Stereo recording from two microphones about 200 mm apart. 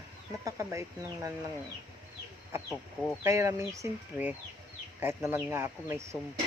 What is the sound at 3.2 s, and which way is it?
Speech, 15° right (ahead or behind).